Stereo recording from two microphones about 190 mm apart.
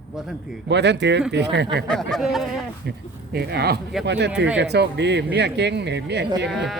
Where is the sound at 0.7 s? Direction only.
65° right (ahead or behind).